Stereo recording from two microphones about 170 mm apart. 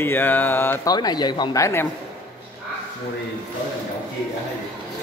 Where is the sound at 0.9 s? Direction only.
25° left (ahead or behind).